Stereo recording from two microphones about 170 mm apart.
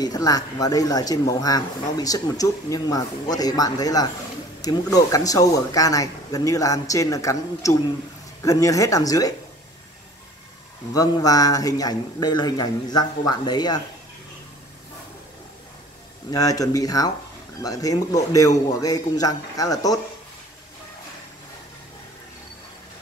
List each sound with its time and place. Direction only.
0.0 s speech: 20° left (ahead or behind)
10.9 s speech: 20° left (ahead or behind)
16.3 s speech: 20° left (ahead or behind)